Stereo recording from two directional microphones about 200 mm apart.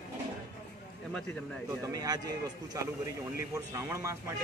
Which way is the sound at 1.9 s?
20° right (ahead or behind).